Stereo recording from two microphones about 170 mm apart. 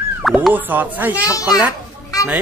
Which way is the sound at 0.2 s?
Centre (ahead or behind).